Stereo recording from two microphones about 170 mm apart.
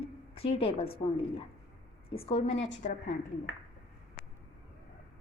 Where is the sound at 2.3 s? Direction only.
35° left (ahead or behind).